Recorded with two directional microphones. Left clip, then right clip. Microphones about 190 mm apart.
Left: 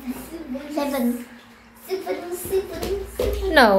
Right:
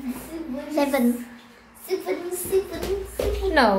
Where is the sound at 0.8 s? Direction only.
35° right (ahead or behind).